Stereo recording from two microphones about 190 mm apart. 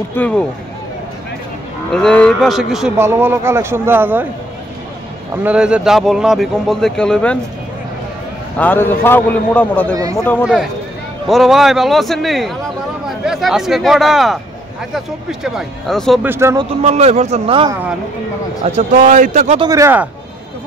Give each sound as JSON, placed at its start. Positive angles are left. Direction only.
{"t": 0.1, "sound": "a man's voice", "side_deg": 5}
{"t": 1.9, "sound": "speech", "side_deg": 5}
{"t": 3.0, "sound": "speech", "side_deg": -10}
{"t": 5.4, "sound": "speech", "side_deg": -5}
{"t": 8.5, "sound": "a man's voice", "side_deg": 10}
{"t": 10.4, "sound": "speech", "side_deg": -5}
{"t": 16.3, "sound": "speech", "side_deg": -15}
{"t": 16.8, "sound": "a man's voice", "side_deg": -35}
{"t": 17.6, "sound": "speech", "side_deg": -10}
{"t": 18.6, "sound": "a man's voice", "side_deg": -40}
{"t": 19.6, "sound": "speech", "side_deg": -15}